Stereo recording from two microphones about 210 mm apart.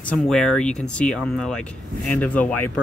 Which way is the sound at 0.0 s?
5° left (ahead or behind).